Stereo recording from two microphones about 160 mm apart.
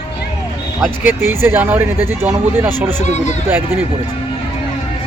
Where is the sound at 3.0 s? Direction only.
45° left (ahead or behind).